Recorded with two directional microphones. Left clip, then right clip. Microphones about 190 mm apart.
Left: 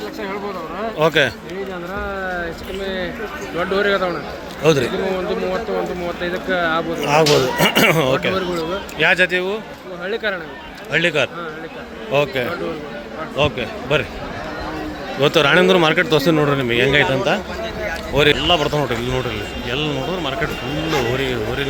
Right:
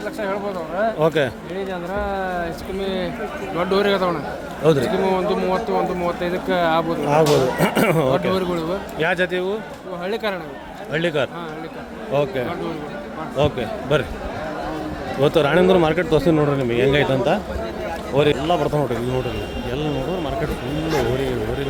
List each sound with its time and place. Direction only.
0.9 s speech: 10° right (ahead or behind)
2.8 s speech: 60° right (ahead or behind)
4.6 s speech: 5° right (ahead or behind)
5.0 s speech: 60° right (ahead or behind)
7.0 s speech: 5° right (ahead or behind)
10.0 s speech: 60° right (ahead or behind)
10.9 s speech: 5° right (ahead or behind)
13.3 s speech: 15° right (ahead or behind)
15.2 s speech: 10° right (ahead or behind)